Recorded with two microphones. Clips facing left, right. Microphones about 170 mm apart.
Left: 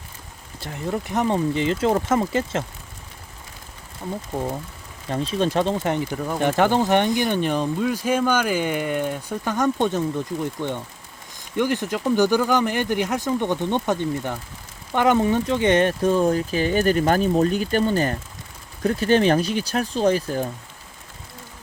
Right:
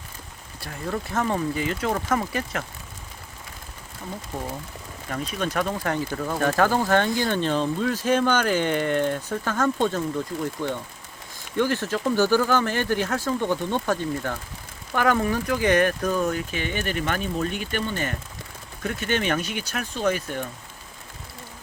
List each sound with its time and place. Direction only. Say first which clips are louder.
0.6 s speech: left 3 dB; 20° left (ahead or behind)
5.0 s speech: left 6 dB; 30° left (ahead or behind)